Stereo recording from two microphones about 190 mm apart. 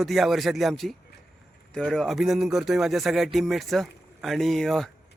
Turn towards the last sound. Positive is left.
turn(degrees=0)  # may be behind; listen again after turning